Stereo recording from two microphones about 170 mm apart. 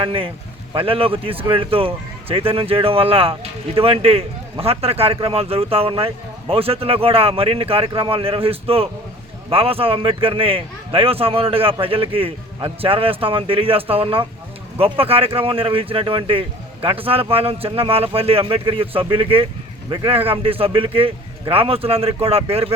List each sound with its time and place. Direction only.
0.0 s a man's voice: 30° right (ahead or behind)